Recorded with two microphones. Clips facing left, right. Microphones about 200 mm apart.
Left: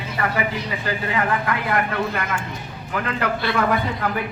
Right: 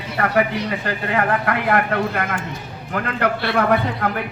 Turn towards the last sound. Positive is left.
turn(degrees=-60)  # may be behind; listen again after turning